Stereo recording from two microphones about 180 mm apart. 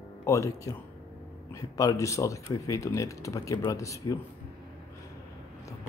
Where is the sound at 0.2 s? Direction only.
15° left (ahead or behind).